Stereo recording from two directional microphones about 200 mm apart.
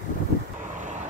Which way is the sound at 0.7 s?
40° right (ahead or behind).